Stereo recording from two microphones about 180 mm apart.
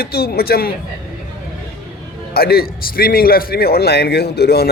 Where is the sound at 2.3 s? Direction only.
60° left (ahead or behind).